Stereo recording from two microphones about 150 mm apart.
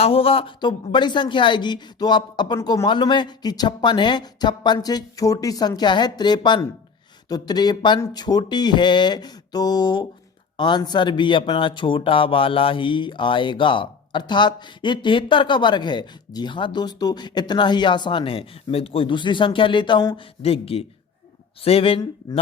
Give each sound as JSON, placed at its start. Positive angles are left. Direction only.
{"t": 0.0, "sound": "speech", "side_deg": 40}
{"t": 2.6, "sound": "speech", "side_deg": 20}
{"t": 2.8, "sound": "speech", "side_deg": 30}
{"t": 20.4, "sound": "speech", "side_deg": 40}